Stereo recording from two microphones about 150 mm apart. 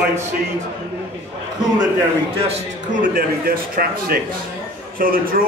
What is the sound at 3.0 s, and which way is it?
A man's voice, 75° right (ahead or behind).